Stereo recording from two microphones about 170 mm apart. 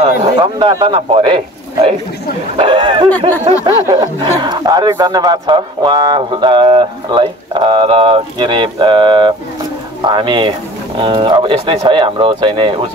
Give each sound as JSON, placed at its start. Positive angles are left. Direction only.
{"t": 0.1, "sound": "speech", "side_deg": -25}